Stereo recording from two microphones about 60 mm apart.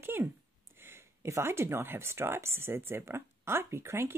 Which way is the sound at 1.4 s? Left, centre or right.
Right.